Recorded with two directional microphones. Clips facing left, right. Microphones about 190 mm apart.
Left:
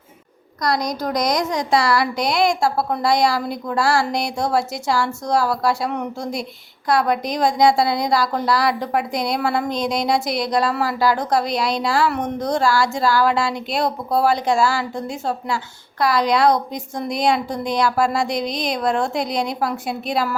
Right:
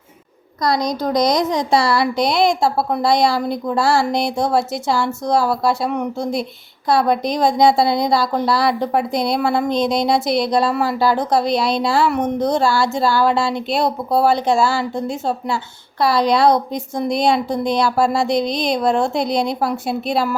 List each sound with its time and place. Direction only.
0.6 s a woman's voice: 25° right (ahead or behind)